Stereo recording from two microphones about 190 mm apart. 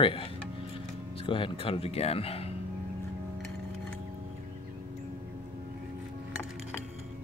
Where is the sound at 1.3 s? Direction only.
30° left (ahead or behind).